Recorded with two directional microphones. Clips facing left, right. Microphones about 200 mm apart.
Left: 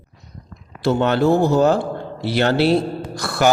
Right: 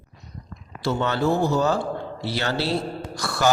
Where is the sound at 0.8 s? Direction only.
60° left (ahead or behind).